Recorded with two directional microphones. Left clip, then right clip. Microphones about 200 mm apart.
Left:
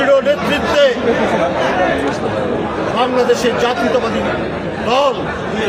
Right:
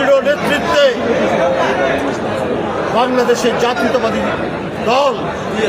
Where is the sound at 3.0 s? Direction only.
Centre (ahead or behind).